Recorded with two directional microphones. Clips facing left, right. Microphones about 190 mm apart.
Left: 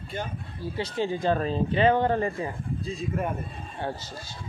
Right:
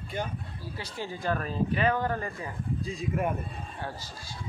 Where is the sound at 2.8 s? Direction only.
15° right (ahead or behind).